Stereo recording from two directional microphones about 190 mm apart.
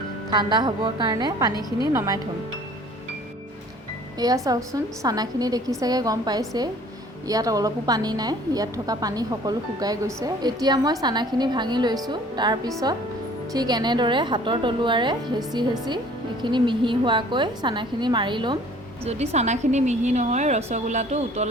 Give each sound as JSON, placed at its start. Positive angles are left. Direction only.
{"t": 0.3, "sound": "a woman's voice", "side_deg": -20}
{"t": 4.4, "sound": "a woman's voice", "side_deg": -20}